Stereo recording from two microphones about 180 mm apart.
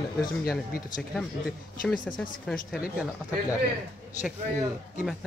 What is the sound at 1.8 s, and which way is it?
Speech, 5° left (ahead or behind).